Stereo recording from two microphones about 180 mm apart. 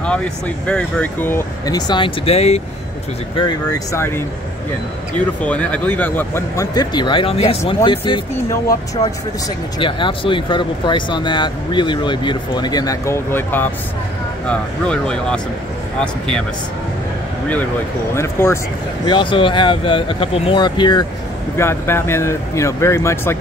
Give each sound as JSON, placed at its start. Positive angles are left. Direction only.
{"t": 0.0, "sound": "speech", "side_deg": 5}
{"t": 3.3, "sound": "speech", "side_deg": 20}
{"t": 5.4, "sound": "speech", "side_deg": 5}
{"t": 18.1, "sound": "speech", "side_deg": 15}
{"t": 19.0, "sound": "speech", "side_deg": 25}
{"t": 21.5, "sound": "speech", "side_deg": 15}